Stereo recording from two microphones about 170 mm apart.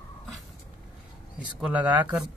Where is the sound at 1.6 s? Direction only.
10° right (ahead or behind).